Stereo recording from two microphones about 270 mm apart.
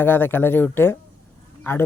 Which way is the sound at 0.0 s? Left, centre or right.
Centre.